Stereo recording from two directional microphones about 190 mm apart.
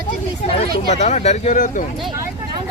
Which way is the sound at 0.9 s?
35° left (ahead or behind).